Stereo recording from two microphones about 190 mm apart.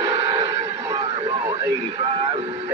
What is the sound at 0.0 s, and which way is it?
Speech, 25° right (ahead or behind).